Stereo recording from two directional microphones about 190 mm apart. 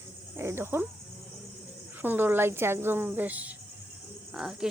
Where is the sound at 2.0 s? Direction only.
10° right (ahead or behind).